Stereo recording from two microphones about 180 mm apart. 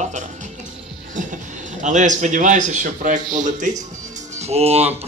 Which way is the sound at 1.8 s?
45° right (ahead or behind).